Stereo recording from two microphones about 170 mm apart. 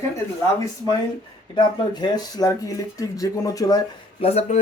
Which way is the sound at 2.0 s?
25° left (ahead or behind).